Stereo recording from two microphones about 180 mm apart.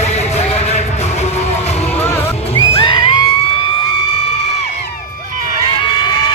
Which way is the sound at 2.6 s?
30° left (ahead or behind).